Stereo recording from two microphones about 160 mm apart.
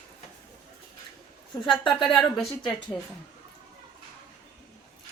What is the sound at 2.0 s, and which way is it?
Speech, centre (ahead or behind).